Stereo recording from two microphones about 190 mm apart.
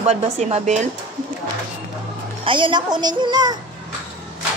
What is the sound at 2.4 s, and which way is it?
A woman's voice, 25° right (ahead or behind).